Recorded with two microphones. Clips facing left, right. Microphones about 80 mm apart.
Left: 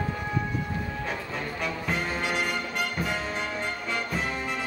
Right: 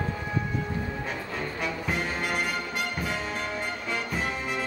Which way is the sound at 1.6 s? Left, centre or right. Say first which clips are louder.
Even; centre.